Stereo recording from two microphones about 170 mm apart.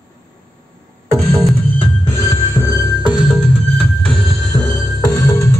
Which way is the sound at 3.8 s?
Centre (ahead or behind).